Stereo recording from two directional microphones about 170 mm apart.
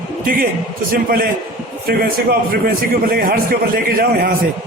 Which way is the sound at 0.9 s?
60° right (ahead or behind).